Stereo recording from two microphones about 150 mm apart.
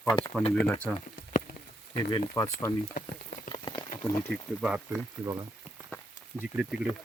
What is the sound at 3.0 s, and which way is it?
Speech, 75° left (ahead or behind).